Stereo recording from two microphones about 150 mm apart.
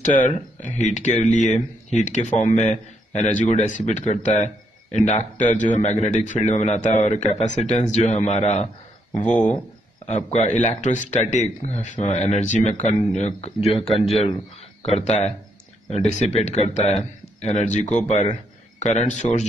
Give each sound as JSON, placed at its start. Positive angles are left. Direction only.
{"t": 0.0, "sound": "speech", "side_deg": 55}